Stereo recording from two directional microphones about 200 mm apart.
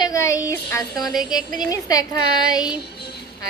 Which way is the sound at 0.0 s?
15° left (ahead or behind).